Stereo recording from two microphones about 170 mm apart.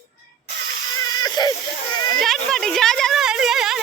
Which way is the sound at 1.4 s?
25° left (ahead or behind).